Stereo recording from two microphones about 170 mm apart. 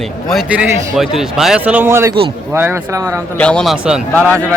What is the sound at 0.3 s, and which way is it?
A man's voice, 5° right (ahead or behind).